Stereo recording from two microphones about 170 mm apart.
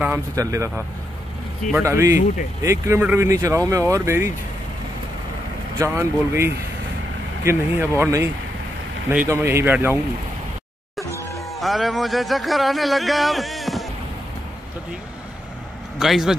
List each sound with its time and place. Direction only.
0.0 s speech: 15° right (ahead or behind)
5.8 s speech: 15° right (ahead or behind)
11.1 s music: 15° left (ahead or behind)
11.6 s speech: centre (ahead or behind)
16.0 s speech: centre (ahead or behind)